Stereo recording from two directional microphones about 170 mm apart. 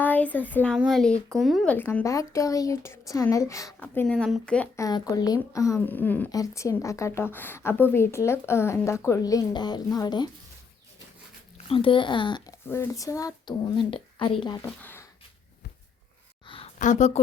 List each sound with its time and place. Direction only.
0.0 s speech: 10° left (ahead or behind)
1.7 s speech: 10° left (ahead or behind)
4.8 s speech: 20° left (ahead or behind)
11.5 s speech: 30° left (ahead or behind)
12.6 s speech: 15° left (ahead or behind)
14.8 s speech: 10° left (ahead or behind)
16.7 s speech: 45° left (ahead or behind)